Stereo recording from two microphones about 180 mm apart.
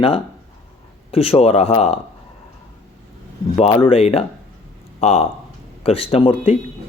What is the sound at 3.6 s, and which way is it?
Speech, 30° left (ahead or behind).